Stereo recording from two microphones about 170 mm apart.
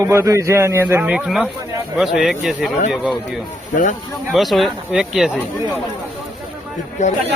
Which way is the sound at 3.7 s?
50° left (ahead or behind).